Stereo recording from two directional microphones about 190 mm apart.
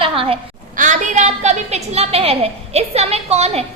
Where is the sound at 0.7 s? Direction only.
40° right (ahead or behind).